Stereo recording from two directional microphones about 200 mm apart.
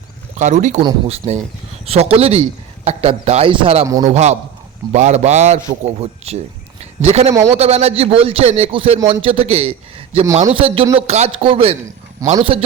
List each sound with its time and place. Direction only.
0.3 s speech: 35° right (ahead or behind)
0.8 s a man's voice: 25° right (ahead or behind)
4.1 s a man's voice: 35° right (ahead or behind)